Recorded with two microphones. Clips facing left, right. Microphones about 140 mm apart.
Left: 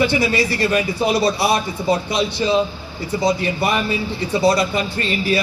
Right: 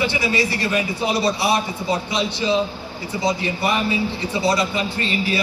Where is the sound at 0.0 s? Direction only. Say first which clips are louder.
Left 3 dB; 40° left (ahead or behind).